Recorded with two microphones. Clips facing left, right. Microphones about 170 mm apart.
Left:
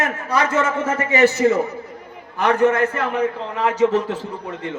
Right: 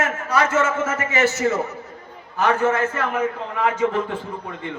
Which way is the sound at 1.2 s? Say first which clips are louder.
Left 7 dB; 15° left (ahead or behind).